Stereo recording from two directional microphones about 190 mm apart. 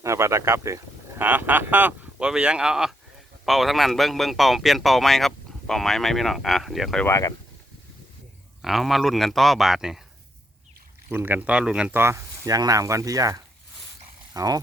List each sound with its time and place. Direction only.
0.0 s speech: 15° right (ahead or behind); by 7.1 s centre (ahead or behind)
7.1 s speech: 15° left (ahead or behind)
8.6 s speech: centre (ahead or behind)
11.1 s speech: 10° right (ahead or behind)